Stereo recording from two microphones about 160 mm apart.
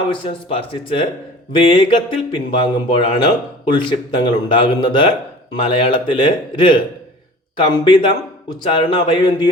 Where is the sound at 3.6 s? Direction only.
30° left (ahead or behind).